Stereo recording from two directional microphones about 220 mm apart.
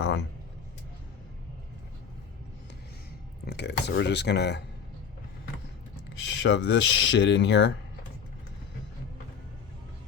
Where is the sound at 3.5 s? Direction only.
50° left (ahead or behind).